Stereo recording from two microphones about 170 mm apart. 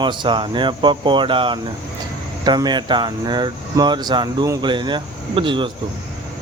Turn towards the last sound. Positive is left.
turn(degrees=-30)  # may be behind; listen again after turning